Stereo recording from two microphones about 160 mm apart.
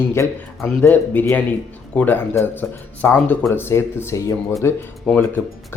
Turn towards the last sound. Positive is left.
turn(degrees=10)  # may be behind; listen again after turning